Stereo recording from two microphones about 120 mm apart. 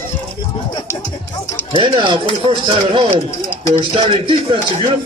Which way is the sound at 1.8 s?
40° right (ahead or behind).